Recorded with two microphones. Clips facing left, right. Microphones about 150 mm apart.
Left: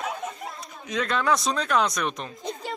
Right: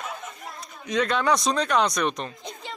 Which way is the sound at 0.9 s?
Centre (ahead or behind).